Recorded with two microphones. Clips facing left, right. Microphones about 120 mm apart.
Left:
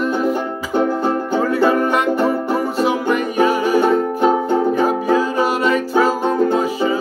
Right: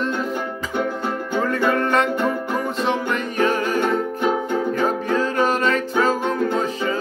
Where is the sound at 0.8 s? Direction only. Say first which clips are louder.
Left 7 dB; 35° left (ahead or behind).